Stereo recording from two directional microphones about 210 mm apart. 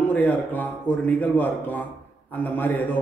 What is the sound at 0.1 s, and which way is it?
A man's voice, 5° left (ahead or behind).